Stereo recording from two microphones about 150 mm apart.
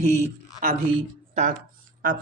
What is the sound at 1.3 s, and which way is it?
Speech, 55° right (ahead or behind).